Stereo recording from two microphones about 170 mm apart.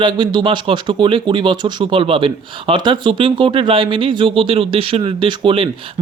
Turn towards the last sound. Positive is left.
turn(degrees=-30)  # may be behind; listen again after turning